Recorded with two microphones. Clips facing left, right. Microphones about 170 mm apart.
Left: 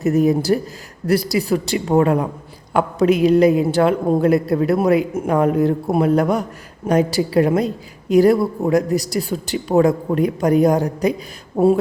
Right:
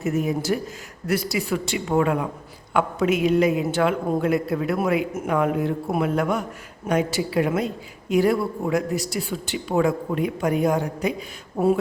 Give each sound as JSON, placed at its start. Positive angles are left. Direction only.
{"t": 0.0, "sound": "a man's voice", "side_deg": 35}